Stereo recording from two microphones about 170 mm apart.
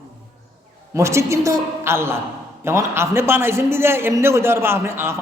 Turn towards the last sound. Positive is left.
turn(degrees=-15)  # may be behind; listen again after turning